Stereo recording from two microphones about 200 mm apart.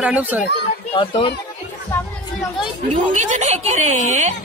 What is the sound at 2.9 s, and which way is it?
Speech, 35° right (ahead or behind).